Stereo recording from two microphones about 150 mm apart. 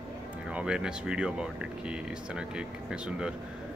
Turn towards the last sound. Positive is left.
turn(degrees=-5)  # may be behind; listen again after turning